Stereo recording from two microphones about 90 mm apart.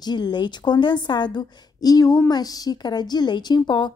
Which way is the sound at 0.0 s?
50° left (ahead or behind).